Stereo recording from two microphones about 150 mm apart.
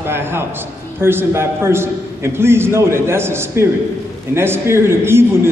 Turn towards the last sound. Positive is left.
turn(degrees=-15)  # may be behind; listen again after turning